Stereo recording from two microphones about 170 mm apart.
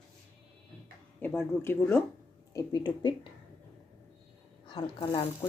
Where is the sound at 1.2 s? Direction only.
10° left (ahead or behind).